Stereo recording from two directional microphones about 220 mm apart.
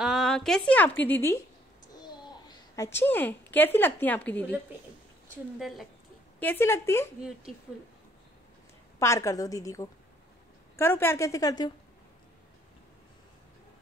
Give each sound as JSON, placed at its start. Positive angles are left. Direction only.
{"t": 0.0, "sound": "a woman's voice", "side_deg": 0}
{"t": 2.0, "sound": "a sound", "side_deg": 20}
{"t": 3.0, "sound": "a woman's voice", "side_deg": 10}
{"t": 5.6, "sound": "a woman's voice", "side_deg": 0}
{"t": 6.4, "sound": "a woman's voice", "side_deg": 10}
{"t": 7.2, "sound": "a woman's voice", "side_deg": -5}
{"t": 9.0, "sound": "a woman's voice", "side_deg": 15}